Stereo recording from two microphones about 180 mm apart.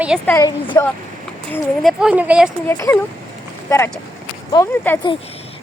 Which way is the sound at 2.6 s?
10° left (ahead or behind).